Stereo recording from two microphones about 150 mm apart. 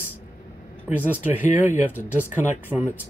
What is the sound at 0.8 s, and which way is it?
Speech, 10° right (ahead or behind).